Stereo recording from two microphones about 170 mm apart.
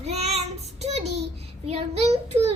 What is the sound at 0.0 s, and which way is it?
Child singing, 40° right (ahead or behind).